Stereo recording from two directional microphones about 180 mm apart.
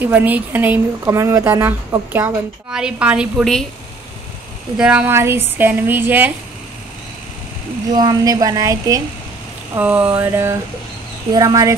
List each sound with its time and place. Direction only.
0.0 s speech: 10° right (ahead or behind)
4.7 s speech: 5° right (ahead or behind)
7.9 s speech: 20° right (ahead or behind)